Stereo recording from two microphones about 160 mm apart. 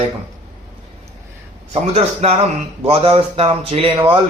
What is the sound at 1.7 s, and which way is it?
A man's voice, 40° right (ahead or behind).